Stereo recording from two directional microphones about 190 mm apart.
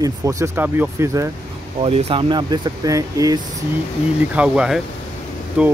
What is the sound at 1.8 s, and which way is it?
Speech, 30° right (ahead or behind).